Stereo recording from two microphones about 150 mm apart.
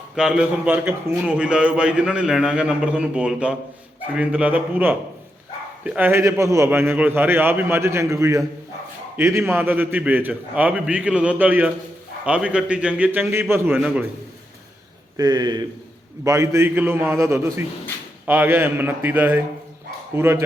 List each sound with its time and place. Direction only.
0.2 s a man's voice: 5° right (ahead or behind)
15.1 s a man's voice: 25° right (ahead or behind)